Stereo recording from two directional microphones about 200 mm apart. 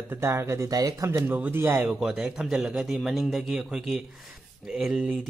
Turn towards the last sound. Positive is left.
turn(degrees=-5)  # may be behind; listen again after turning